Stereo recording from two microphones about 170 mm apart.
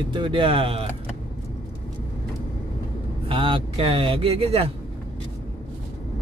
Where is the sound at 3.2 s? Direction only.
30° right (ahead or behind).